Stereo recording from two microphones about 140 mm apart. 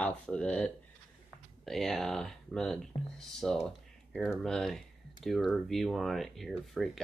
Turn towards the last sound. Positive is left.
turn(degrees=0)  # may be behind; listen again after turning